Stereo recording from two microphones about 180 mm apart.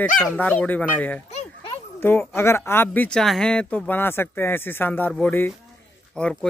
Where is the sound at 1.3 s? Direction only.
30° left (ahead or behind).